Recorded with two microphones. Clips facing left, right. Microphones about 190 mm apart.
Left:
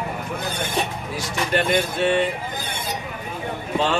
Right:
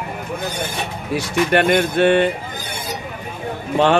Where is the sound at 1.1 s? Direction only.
65° right (ahead or behind).